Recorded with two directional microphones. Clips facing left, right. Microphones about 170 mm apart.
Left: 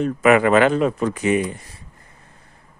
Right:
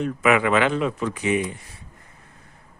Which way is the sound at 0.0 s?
45° left (ahead or behind).